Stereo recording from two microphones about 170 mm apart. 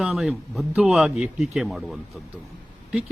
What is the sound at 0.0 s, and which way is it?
Speech, centre (ahead or behind).